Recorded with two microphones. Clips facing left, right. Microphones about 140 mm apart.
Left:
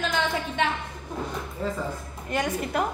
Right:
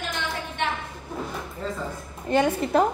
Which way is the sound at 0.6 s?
90° left.